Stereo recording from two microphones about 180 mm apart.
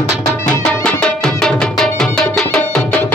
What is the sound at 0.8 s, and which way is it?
Music, 5° left (ahead or behind).